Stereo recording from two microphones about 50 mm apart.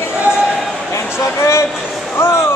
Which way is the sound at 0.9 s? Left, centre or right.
Left.